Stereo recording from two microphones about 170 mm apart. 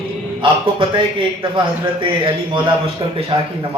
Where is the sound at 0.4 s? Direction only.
30° right (ahead or behind).